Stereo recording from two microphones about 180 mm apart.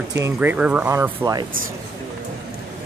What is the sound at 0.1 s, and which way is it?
Speech, 15° right (ahead or behind).